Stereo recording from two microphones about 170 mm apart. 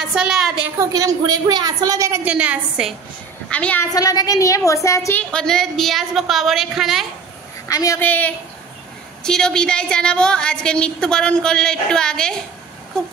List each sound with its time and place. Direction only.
0.0 s a woman's voice: 5° right (ahead or behind)
0.7 s a woman's voice: 20° right (ahead or behind)
3.4 s a woman's voice: 5° left (ahead or behind)
3.9 s a woman's voice: 20° left (ahead or behind)
5.3 s a woman's voice: 5° left (ahead or behind)
7.6 s a woman's voice: 20° left (ahead or behind)